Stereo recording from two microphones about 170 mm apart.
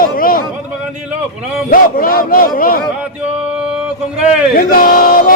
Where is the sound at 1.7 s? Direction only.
55° left (ahead or behind).